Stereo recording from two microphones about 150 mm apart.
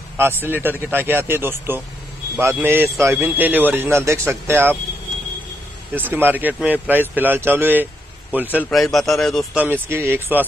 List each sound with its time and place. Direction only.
0.2 s speech: 15° right (ahead or behind)
5.9 s speech: 15° right (ahead or behind)
8.6 s a man's voice: 5° left (ahead or behind)
9.6 s speech: 15° right (ahead or behind)